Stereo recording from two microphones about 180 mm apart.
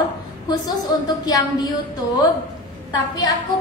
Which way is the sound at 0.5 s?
20° left (ahead or behind).